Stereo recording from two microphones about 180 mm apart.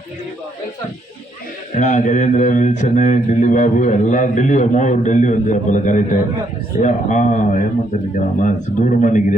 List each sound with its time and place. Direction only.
1.7 s speech: 45° left (ahead or behind)